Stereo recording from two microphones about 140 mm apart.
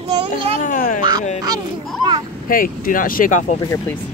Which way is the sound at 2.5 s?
80° left.